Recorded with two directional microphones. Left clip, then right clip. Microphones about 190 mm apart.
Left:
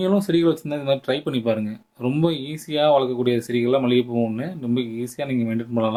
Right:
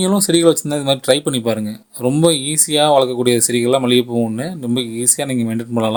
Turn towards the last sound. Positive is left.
turn(degrees=-40)  # may be behind; listen again after turning